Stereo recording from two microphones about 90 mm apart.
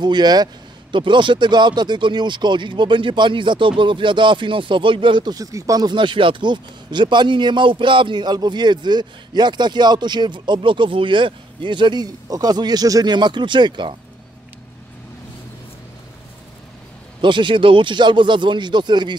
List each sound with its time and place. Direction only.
0.0 s a man's voice: 50° right (ahead or behind)
0.9 s speech: 65° right (ahead or behind); by 13.1 s 45° right (ahead or behind)
13.1 s speech: 55° right (ahead or behind)
17.2 s speech: 65° right (ahead or behind)